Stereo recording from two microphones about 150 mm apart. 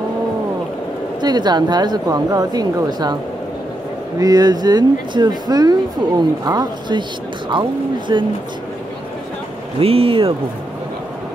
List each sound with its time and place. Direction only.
1.2 s speech: 30° right (ahead or behind)
4.2 s speech: 25° right (ahead or behind)
9.8 s speech: 40° right (ahead or behind)